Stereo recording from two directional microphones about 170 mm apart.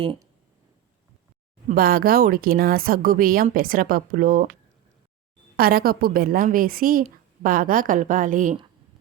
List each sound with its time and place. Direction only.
1.6 s speech: 60° right (ahead or behind)
5.5 s a woman's voice: 60° right (ahead or behind)